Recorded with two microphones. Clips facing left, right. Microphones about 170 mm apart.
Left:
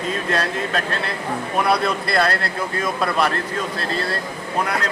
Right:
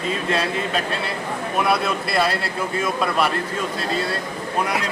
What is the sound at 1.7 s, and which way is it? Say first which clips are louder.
Speech: left 3 dB; 5° right (ahead or behind).